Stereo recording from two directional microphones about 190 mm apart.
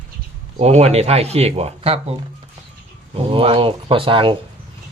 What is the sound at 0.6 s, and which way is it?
Speech, 35° right (ahead or behind).